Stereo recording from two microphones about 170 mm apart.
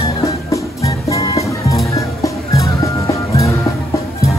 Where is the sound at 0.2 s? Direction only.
20° left (ahead or behind).